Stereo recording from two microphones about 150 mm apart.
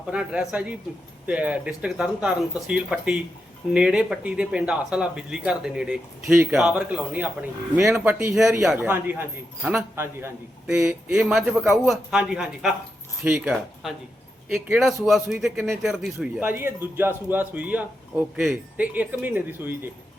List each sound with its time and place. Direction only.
0.1 s a man's voice: 5° right (ahead or behind)
8.9 s a man's voice: 15° right (ahead or behind)
10.8 s a man's voice: 5° right (ahead or behind)